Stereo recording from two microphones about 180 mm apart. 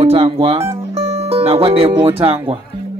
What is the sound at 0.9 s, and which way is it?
Speech, 35° right (ahead or behind).